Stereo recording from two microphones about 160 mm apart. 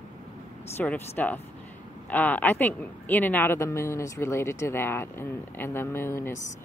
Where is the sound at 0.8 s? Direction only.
10° left (ahead or behind).